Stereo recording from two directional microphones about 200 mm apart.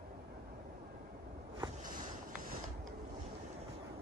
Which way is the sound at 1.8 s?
45° right (ahead or behind).